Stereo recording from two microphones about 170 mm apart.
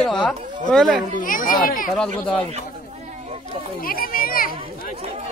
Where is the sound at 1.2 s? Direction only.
55° left (ahead or behind).